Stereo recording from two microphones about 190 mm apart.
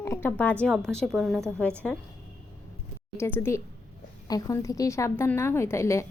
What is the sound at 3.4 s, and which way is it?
A woman's voice, 15° left (ahead or behind).